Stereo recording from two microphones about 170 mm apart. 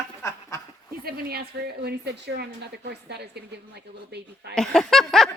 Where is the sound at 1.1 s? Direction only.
65° right (ahead or behind).